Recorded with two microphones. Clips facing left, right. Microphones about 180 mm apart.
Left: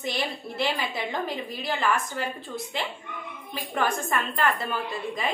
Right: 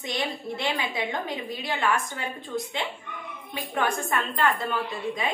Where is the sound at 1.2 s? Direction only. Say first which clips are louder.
Left 1 dB; centre (ahead or behind).